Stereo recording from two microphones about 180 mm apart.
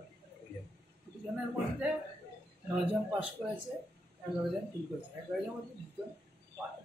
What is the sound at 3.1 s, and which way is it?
Speech, 10° right (ahead or behind).